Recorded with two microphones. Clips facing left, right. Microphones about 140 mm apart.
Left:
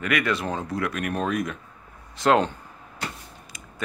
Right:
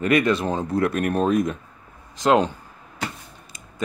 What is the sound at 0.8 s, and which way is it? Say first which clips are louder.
Speech: right 8 dB; 40° right (ahead or behind).